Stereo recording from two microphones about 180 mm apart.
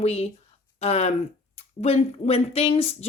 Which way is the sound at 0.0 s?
35° left (ahead or behind).